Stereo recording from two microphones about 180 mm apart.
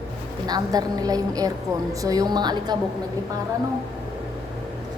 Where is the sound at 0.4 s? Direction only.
20° right (ahead or behind).